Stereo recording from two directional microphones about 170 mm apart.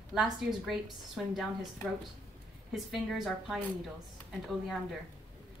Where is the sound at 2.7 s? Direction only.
Centre (ahead or behind).